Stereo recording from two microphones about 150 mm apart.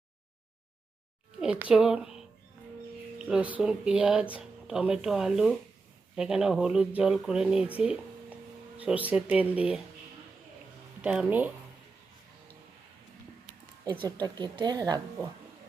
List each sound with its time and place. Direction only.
1.4 s a woman's voice: 10° right (ahead or behind)
11.0 s speech: 5° right (ahead or behind)
13.8 s a woman's voice: 30° right (ahead or behind)